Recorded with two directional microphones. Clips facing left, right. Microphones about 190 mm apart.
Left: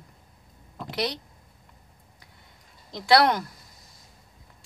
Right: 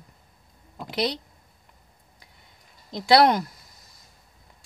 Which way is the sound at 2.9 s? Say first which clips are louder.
Right 2 dB; 15° right (ahead or behind).